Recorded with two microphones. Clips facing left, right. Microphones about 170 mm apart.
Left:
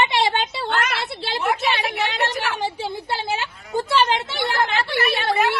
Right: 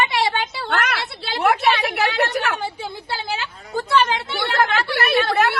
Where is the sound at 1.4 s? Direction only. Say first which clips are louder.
Right 5 dB; 60° right (ahead or behind).